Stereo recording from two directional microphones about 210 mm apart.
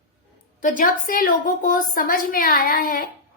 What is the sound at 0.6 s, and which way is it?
A woman's voice, 40° left (ahead or behind).